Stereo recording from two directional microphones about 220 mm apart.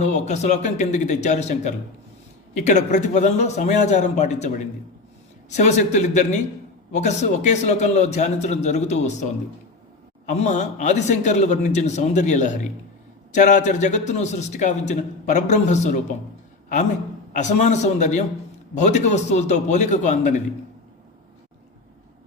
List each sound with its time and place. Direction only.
0.0 s a man's voice: 30° left (ahead or behind)
10.2 s a man's voice: 35° left (ahead or behind)
17.3 s a man's voice: 30° left (ahead or behind)